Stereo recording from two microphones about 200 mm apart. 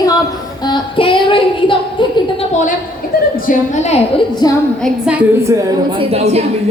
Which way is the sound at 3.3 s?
40° left (ahead or behind).